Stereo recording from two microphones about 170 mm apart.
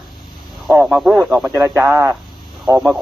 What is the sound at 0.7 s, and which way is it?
Speech, 10° right (ahead or behind).